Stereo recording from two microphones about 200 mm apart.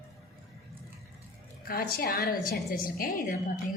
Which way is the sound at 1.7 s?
45° left (ahead or behind).